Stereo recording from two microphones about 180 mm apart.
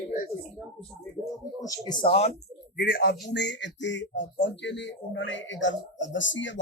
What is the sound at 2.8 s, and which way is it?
A man's voice, 60° left (ahead or behind).